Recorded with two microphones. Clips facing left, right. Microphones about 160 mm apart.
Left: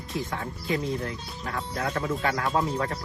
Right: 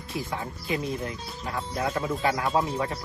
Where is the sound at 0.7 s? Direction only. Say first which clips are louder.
Left 1 dB; 20° right (ahead or behind).